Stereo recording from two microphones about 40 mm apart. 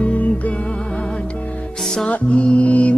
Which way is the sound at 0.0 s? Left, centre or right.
Left.